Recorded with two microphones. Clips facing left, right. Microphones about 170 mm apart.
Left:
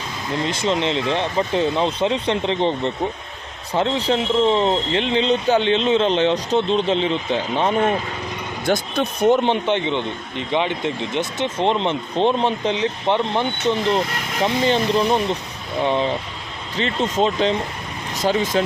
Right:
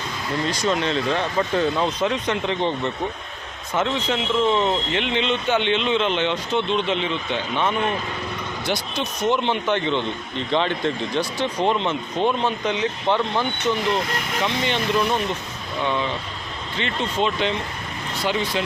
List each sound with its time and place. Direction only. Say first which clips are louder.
0.4 s speech: left 2 dB; 25° left (ahead or behind)
8.6 s speech: left 7 dB; 50° left (ahead or behind)
9.6 s speech: left 1 dB; 20° left (ahead or behind); by 18.6 s 45° left (ahead or behind)